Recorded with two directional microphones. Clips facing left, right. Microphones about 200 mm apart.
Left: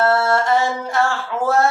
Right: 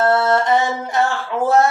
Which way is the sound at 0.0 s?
20° right (ahead or behind).